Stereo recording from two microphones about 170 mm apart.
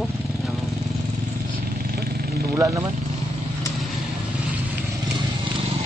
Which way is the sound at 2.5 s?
20° right (ahead or behind).